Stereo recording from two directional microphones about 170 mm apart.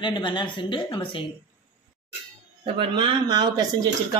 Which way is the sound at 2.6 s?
25° right (ahead or behind).